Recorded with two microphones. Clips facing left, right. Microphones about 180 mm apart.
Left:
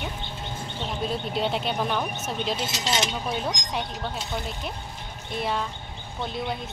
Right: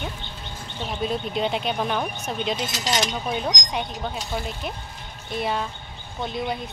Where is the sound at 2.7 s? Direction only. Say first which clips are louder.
Right 2 dB; 25° left (ahead or behind).